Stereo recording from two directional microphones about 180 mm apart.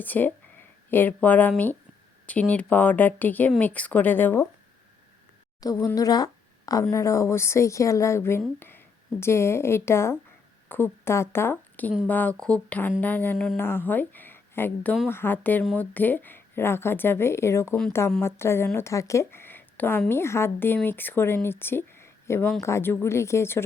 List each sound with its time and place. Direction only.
0.0 s a woman's voice: 10° left (ahead or behind)
5.5 s a woman's voice: 20° left (ahead or behind)